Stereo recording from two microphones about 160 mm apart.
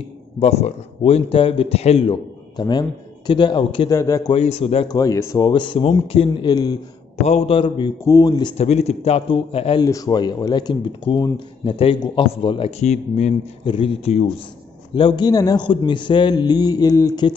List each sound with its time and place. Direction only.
0.4 s speech: 40° left (ahead or behind)
3.9 s a man's voice: 20° left (ahead or behind)
4.3 s speech: 40° left (ahead or behind)
4.8 s a man's voice: 20° left (ahead or behind)
7.2 s a man's voice: 40° left (ahead or behind)
8.5 s speech: 45° left (ahead or behind)
9.8 s speech: 20° left (ahead or behind); by 13.3 s 45° left (ahead or behind)
13.7 s a man's voice: 35° left (ahead or behind)